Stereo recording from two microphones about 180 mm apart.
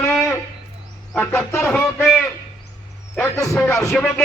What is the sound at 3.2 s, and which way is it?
Speech, 15° left (ahead or behind).